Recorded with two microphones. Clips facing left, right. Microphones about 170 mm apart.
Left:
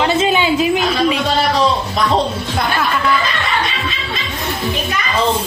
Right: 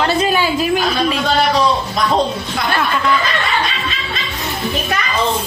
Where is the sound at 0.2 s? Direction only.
20° left (ahead or behind).